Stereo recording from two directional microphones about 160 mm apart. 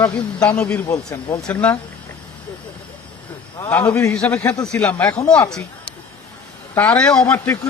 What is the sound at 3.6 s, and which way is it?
Speech, 15° left (ahead or behind).